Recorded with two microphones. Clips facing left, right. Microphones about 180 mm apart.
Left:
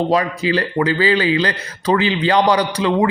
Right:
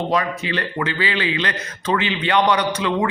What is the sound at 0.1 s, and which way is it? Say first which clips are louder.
A man's voice: left 5 dB; 35° left (ahead or behind).